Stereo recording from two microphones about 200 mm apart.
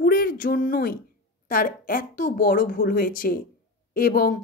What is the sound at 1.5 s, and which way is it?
Speech, 45° left (ahead or behind).